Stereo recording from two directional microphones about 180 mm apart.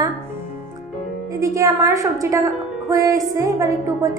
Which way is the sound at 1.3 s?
15° right (ahead or behind).